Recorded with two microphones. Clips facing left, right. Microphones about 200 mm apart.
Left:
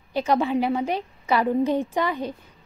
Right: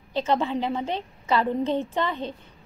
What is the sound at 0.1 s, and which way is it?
A woman's voice, 10° left (ahead or behind).